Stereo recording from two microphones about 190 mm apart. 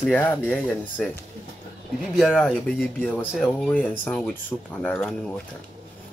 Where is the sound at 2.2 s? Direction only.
Centre (ahead or behind).